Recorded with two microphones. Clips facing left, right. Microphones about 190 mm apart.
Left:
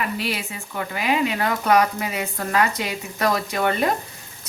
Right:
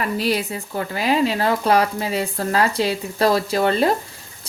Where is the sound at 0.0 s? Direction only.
40° right (ahead or behind).